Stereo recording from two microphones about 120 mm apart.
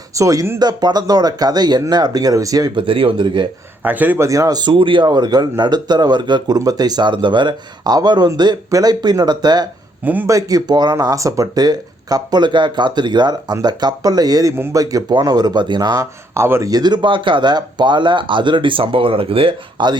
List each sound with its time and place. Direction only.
0.1 s speech: 25° right (ahead or behind)
0.6 s speech: 35° right (ahead or behind)
3.8 s speech: 15° right (ahead or behind)
4.3 s speech: 30° right (ahead or behind)
10.0 s speech: 15° right (ahead or behind)
10.2 s speech: 30° right (ahead or behind)
16.3 s speech: 20° right (ahead or behind); by 20.0 s 45° right (ahead or behind)